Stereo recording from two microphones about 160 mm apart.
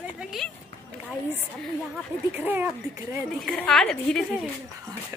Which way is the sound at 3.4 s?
Centre (ahead or behind).